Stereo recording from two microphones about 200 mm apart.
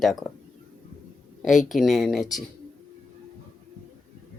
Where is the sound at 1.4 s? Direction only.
Centre (ahead or behind).